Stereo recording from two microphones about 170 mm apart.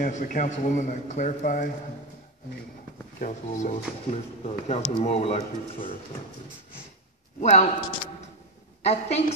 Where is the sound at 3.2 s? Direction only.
45° left (ahead or behind).